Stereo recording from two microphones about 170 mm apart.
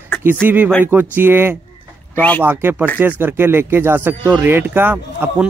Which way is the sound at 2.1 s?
10° left (ahead or behind).